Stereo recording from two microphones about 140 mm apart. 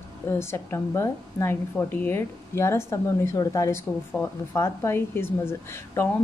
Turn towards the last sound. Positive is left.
turn(degrees=15)  # may be behind; listen again after turning